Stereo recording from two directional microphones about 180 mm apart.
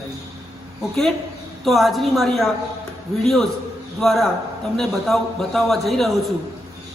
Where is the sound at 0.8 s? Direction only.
Centre (ahead or behind).